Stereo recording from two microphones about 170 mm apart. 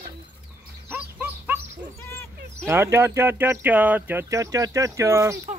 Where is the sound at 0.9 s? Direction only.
10° right (ahead or behind).